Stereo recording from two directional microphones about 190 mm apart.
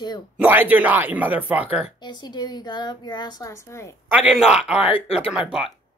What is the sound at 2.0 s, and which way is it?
A woman's voice, 20° left (ahead or behind).